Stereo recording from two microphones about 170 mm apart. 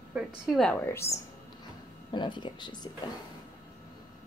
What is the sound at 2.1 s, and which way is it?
Speech, 25° left (ahead or behind).